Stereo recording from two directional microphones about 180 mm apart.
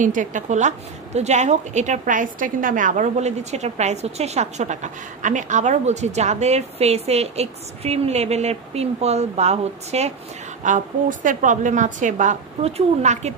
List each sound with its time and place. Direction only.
0.0 s a woman's voice: 45° right (ahead or behind)